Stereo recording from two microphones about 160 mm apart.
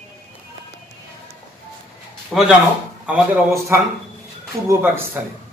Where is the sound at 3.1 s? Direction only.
15° right (ahead or behind).